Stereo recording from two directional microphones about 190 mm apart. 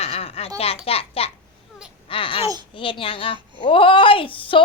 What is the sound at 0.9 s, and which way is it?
A woman's voice, 30° left (ahead or behind).